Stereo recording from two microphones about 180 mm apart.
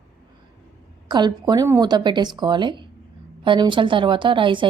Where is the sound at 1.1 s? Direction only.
25° right (ahead or behind).